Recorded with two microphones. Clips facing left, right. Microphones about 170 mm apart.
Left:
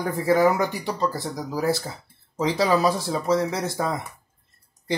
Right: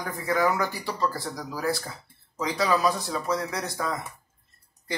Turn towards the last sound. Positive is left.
turn(degrees=25)  # may be behind; listen again after turning